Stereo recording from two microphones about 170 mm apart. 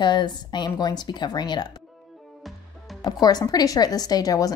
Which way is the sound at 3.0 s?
25° left (ahead or behind).